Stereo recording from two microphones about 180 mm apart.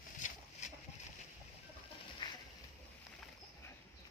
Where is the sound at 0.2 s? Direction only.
45° left (ahead or behind).